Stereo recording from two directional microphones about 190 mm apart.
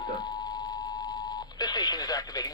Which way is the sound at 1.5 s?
20° left (ahead or behind).